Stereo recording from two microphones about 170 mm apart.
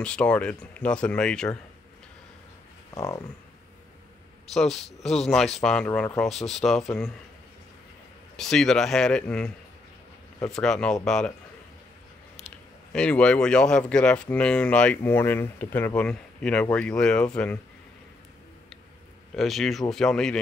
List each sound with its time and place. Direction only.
0.0 s speech: 5° left (ahead or behind)
2.9 s speech: 20° left (ahead or behind)
4.6 s speech: centre (ahead or behind)
8.4 s speech: 5° left (ahead or behind)
10.6 s speech: 5° left (ahead or behind)
12.4 s speech: 5° left (ahead or behind)
19.3 s speech: centre (ahead or behind)